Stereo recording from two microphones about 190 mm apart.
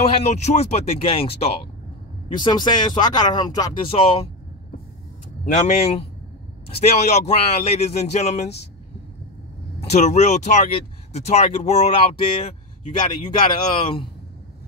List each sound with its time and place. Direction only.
0.1 s speech: 35° left (ahead or behind)
5.4 s speech: 40° left (ahead or behind)
9.8 s speech: 35° left (ahead or behind)